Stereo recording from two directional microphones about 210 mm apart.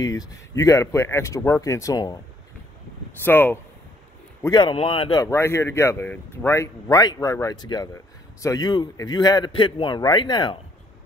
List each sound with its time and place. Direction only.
0.0 s speech: 15° left (ahead or behind)
3.3 s speech: 10° left (ahead or behind)
4.4 s a man's voice: 20° left (ahead or behind)